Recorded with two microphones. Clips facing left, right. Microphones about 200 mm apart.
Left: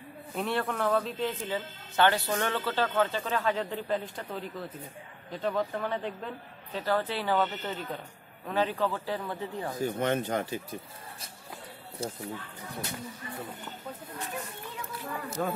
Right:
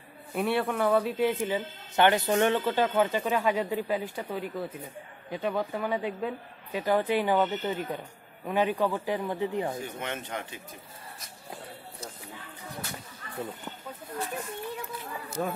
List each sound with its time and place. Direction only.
0.4 s speech: 5° right (ahead or behind)
9.8 s speech: 35° left (ahead or behind)
12.0 s speech: 30° left (ahead or behind)
15.4 s speech: 10° right (ahead or behind)